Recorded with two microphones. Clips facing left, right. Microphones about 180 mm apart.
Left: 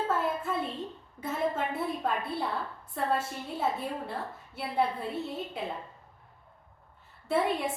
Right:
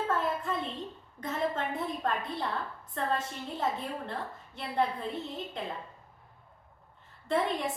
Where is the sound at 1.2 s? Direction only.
5° left (ahead or behind).